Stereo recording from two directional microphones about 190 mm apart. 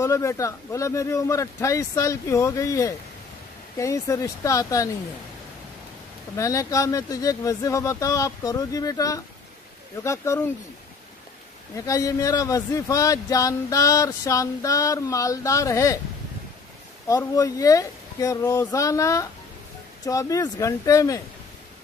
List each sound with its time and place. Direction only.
0.0 s speech: 15° left (ahead or behind)
6.3 s speech: 15° left (ahead or behind)
11.7 s speech: 15° left (ahead or behind)
17.1 s speech: 20° left (ahead or behind)